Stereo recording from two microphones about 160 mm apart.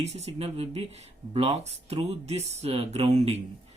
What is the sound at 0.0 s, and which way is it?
Speech, 40° right (ahead or behind).